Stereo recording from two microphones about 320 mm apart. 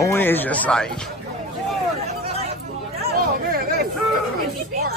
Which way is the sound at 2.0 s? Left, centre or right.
Centre.